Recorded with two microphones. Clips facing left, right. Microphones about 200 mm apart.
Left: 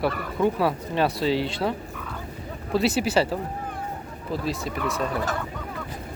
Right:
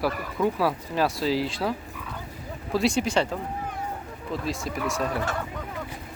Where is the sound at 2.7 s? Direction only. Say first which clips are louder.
Left 2 dB; 5° left (ahead or behind).